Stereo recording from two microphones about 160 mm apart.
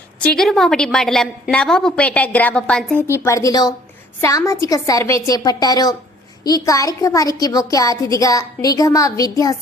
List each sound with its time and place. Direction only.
0.3 s a woman's voice: 5° left (ahead or behind); by 9.6 s 20° left (ahead or behind)